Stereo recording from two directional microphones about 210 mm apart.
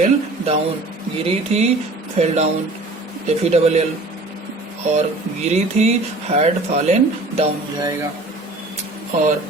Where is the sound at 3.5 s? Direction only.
30° right (ahead or behind).